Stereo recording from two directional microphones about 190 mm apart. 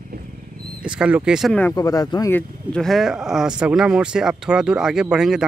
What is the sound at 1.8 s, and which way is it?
Speech, 20° left (ahead or behind).